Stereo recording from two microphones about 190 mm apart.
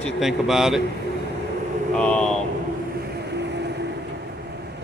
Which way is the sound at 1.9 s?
5° left (ahead or behind).